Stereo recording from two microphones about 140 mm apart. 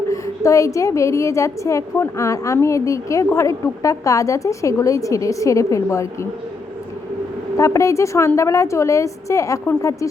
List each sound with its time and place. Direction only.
0.1 s a woman's voice: 20° left (ahead or behind)
7.5 s a woman's voice: 20° left (ahead or behind)